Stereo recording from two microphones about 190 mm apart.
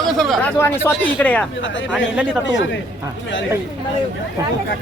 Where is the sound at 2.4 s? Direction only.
70° left (ahead or behind).